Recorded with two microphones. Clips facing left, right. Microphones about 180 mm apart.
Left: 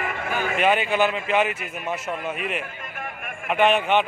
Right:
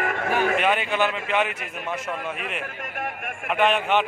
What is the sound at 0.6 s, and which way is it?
A man's voice, centre (ahead or behind).